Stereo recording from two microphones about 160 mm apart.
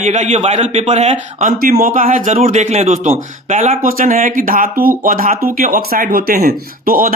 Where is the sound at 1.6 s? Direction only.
60° right (ahead or behind).